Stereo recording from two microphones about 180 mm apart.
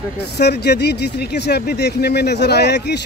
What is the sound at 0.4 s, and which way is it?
Speech, 65° left (ahead or behind).